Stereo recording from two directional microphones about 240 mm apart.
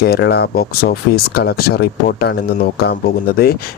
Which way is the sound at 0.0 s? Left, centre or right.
Left.